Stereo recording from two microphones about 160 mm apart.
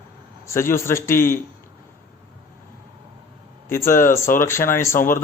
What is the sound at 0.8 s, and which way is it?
Speech, 15° left (ahead or behind).